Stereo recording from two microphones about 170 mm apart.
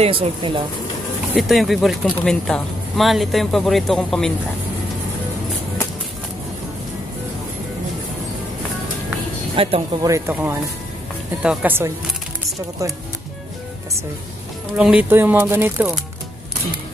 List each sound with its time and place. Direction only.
0.0 s speech: 35° right (ahead or behind)
1.3 s speech: centre (ahead or behind)
9.6 s speech: 35° right (ahead or behind)
10.0 s speech: 15° right (ahead or behind)
14.8 s speech: 5° right (ahead or behind)